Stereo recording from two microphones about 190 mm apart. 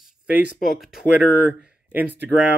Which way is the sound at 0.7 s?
Centre (ahead or behind).